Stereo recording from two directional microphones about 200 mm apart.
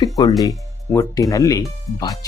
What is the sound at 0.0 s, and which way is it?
Speech, 20° left (ahead or behind).